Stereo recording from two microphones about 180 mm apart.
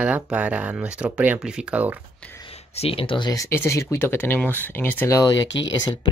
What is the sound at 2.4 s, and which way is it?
Speech, 30° left (ahead or behind).